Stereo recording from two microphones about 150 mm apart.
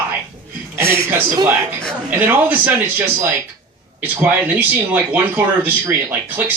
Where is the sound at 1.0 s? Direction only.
20° right (ahead or behind).